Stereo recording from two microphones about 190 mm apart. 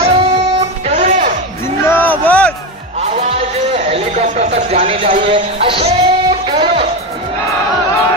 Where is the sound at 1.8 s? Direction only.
10° left (ahead or behind).